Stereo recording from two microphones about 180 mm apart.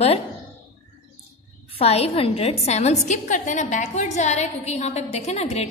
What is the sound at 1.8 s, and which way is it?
A woman's voice, 35° left (ahead or behind).